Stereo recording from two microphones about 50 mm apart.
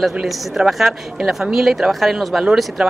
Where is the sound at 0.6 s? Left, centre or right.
Centre.